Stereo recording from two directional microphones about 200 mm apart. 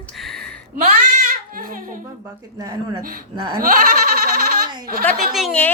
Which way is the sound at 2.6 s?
20° right (ahead or behind).